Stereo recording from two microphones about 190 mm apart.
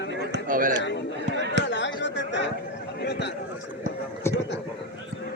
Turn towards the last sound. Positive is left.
turn(degrees=15)  # may be behind; listen again after turning